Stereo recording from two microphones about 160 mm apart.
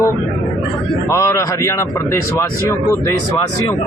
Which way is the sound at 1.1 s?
20° left (ahead or behind).